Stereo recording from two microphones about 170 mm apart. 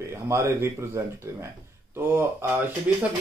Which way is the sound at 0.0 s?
15° right (ahead or behind).